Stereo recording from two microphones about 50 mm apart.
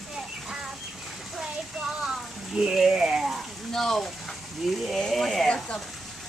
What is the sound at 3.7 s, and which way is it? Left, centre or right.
Frying, centre.